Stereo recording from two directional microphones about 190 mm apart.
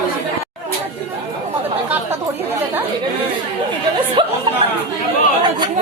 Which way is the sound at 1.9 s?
10° right (ahead or behind).